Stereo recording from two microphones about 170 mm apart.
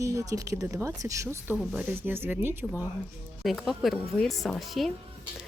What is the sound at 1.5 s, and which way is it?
Speech, 5° right (ahead or behind).